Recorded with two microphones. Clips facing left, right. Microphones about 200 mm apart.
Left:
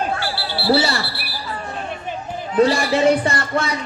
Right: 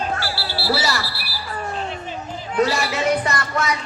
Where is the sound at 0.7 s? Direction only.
30° left (ahead or behind).